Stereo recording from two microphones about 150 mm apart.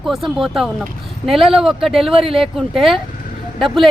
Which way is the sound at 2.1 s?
40° right (ahead or behind).